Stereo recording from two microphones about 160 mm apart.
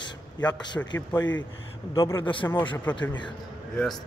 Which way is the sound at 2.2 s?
30° left (ahead or behind).